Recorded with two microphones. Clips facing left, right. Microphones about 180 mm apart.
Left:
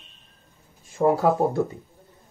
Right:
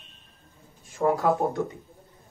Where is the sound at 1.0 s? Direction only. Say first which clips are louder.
Left 4 dB; 25° left (ahead or behind).